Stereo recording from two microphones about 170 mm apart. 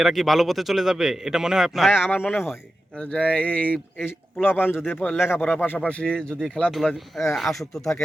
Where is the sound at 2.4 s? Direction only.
10° left (ahead or behind).